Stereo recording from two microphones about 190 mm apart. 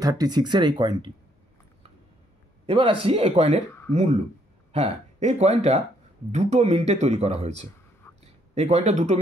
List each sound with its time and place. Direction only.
0.0 s speech: 20° right (ahead or behind)
2.6 s speech: 30° right (ahead or behind)